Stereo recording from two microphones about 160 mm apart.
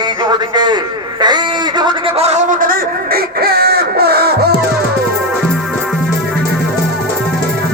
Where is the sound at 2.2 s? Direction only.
50° right (ahead or behind); by 4.5 s 80° right.